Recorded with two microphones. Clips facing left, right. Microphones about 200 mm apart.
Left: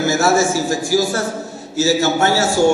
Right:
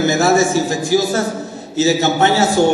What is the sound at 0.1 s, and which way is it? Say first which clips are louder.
A man's voice: right 2 dB; 20° right (ahead or behind).